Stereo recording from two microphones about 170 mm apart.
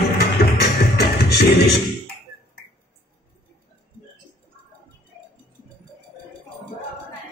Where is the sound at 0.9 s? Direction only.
75° left (ahead or behind).